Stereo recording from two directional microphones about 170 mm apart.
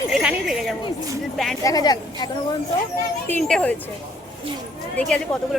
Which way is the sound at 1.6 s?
25° left (ahead or behind).